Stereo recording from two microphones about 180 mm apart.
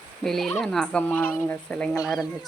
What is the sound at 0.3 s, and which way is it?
Speech, 5° left (ahead or behind).